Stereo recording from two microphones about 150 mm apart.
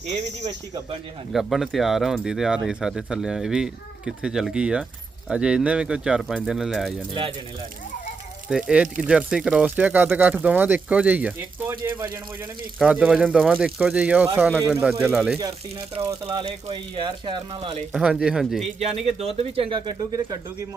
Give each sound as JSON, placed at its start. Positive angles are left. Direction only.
{"t": 1.3, "sound": "speech", "side_deg": 0}
{"t": 7.1, "sound": "speech", "side_deg": -35}
{"t": 8.4, "sound": "speech", "side_deg": -5}
{"t": 12.8, "sound": "speech", "side_deg": -5}
{"t": 16.0, "sound": "speech", "side_deg": -20}
{"t": 17.9, "sound": "speech", "side_deg": -5}
{"t": 18.8, "sound": "speech", "side_deg": -45}